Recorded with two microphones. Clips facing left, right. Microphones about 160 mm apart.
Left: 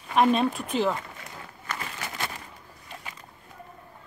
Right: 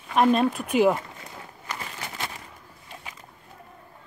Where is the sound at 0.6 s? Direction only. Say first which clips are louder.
Right 6 dB; 10° right (ahead or behind).